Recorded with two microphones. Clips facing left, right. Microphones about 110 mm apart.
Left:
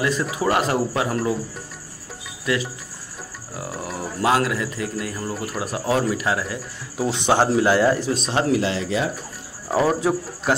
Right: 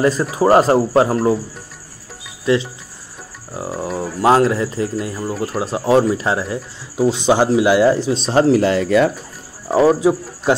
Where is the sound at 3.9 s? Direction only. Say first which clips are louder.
Right 6 dB; 30° right (ahead or behind).